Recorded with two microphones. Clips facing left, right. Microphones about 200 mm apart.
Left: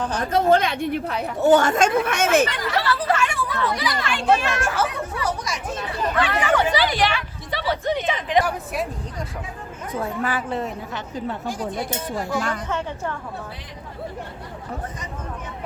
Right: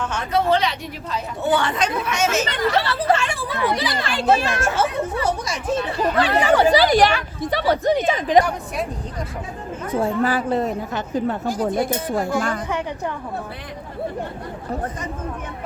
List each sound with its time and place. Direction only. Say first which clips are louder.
0.0 s a woman's voice: left 1 dB; 35° left (ahead or behind); by 1.2 s 60° left (ahead or behind)
1.4 s a woman's voice: left 5 dB; 40° left (ahead or behind)
2.7 s speech: right 1 dB; 25° right (ahead or behind)
8.4 s a woman's voice: right 1 dB; 5° left (ahead or behind)
9.9 s a woman's voice: right 5 dB; 30° right (ahead or behind); by 12.5 s 50° right (ahead or behind)